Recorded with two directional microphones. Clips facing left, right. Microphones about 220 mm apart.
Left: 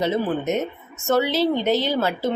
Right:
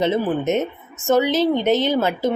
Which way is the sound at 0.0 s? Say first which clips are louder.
Right 3 dB; 25° right (ahead or behind).